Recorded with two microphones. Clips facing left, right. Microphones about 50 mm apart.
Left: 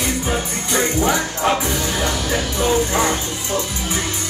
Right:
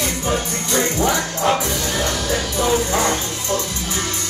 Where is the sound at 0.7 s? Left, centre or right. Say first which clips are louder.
Left 1 dB; left.